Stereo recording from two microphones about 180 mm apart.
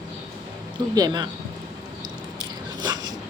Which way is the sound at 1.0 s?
20° right (ahead or behind).